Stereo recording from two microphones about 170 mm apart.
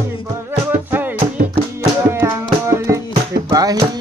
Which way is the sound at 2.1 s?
15° right (ahead or behind).